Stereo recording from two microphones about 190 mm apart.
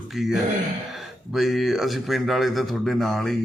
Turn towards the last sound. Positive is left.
turn(degrees=0)  # may be behind; listen again after turning